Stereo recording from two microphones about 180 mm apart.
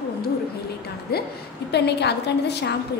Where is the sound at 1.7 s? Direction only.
65° left (ahead or behind).